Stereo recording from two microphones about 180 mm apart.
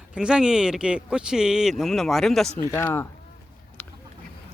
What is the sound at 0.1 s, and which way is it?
Speech, 5° right (ahead or behind).